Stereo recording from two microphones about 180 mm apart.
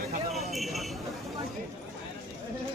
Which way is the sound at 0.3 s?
Centre (ahead or behind).